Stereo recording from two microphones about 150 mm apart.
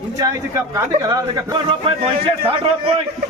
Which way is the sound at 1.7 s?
35° right (ahead or behind).